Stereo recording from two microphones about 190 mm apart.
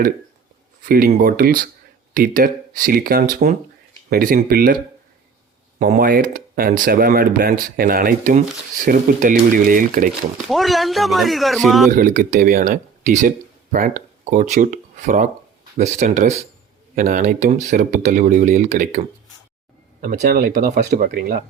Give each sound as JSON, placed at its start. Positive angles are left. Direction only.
{"t": 0.9, "sound": "speech", "side_deg": -50}
{"t": 5.9, "sound": "speech", "side_deg": -50}
{"t": 10.5, "sound": "speech", "side_deg": 0}
{"t": 11.9, "sound": "speech", "side_deg": -45}